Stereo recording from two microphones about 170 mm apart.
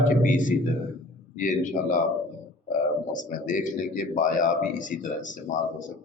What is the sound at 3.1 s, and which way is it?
Speech, 50° left (ahead or behind).